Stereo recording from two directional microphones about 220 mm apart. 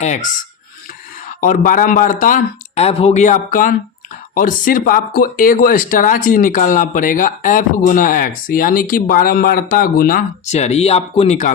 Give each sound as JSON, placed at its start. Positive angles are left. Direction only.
{"t": 0.0, "sound": "speech", "side_deg": 30}
{"t": 1.4, "sound": "speech", "side_deg": 40}